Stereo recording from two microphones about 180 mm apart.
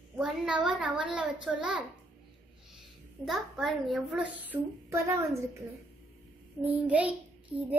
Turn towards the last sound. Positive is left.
turn(degrees=-10)  # may be behind; listen again after turning